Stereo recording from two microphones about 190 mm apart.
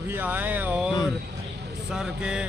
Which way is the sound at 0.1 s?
10° right (ahead or behind).